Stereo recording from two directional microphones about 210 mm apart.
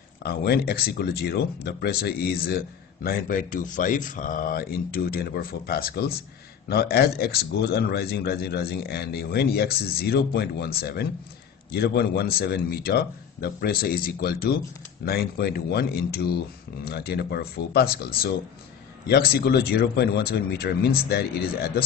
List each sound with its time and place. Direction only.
0.2 s speech: 50° left (ahead or behind)